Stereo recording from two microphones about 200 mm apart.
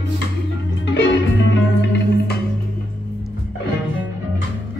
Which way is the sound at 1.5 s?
60° left (ahead or behind).